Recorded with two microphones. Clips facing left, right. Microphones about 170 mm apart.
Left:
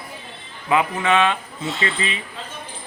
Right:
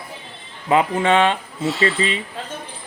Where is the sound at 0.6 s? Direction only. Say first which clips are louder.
Right 3 dB; 30° right (ahead or behind).